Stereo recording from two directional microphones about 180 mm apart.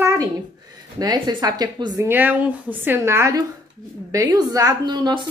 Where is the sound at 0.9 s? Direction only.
20° right (ahead or behind).